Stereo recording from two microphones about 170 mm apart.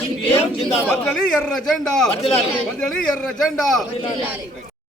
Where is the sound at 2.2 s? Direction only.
35° left (ahead or behind).